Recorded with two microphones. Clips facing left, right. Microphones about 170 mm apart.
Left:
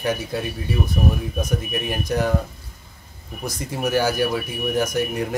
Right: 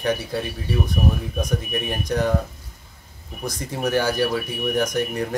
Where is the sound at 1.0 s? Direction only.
5° right (ahead or behind).